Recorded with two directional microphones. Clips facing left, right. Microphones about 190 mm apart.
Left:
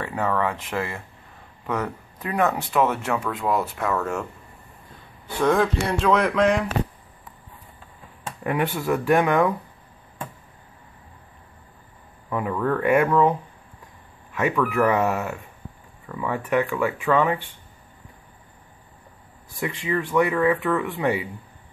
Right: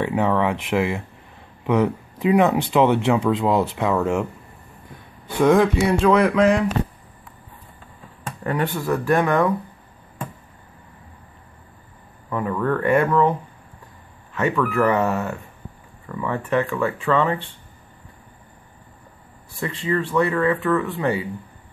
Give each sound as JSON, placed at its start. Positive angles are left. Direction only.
{"t": 0.0, "sound": "speech", "side_deg": -20}
{"t": 5.3, "sound": "speech", "side_deg": -15}
{"t": 5.8, "sound": "speech", "side_deg": -5}
{"t": 8.5, "sound": "speech", "side_deg": 10}
{"t": 12.3, "sound": "speech", "side_deg": 10}
{"t": 14.3, "sound": "speech", "side_deg": 10}
{"t": 19.6, "sound": "speech", "side_deg": 15}